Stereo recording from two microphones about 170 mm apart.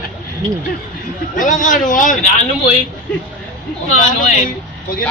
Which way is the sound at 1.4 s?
50° left (ahead or behind).